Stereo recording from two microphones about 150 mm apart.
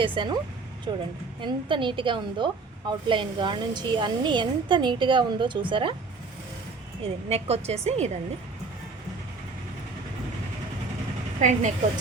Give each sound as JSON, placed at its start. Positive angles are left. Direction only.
{"t": 0.0, "sound": "a woman's voice", "side_deg": -35}
{"t": 7.0, "sound": "a woman's voice", "side_deg": -45}
{"t": 11.3, "sound": "a woman's voice", "side_deg": -55}